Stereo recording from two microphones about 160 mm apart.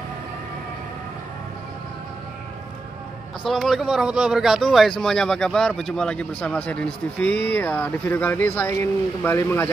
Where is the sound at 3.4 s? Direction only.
Centre (ahead or behind).